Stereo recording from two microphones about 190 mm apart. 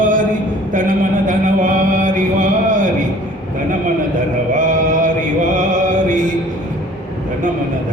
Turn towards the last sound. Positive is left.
turn(degrees=-40)  # may be behind; listen again after turning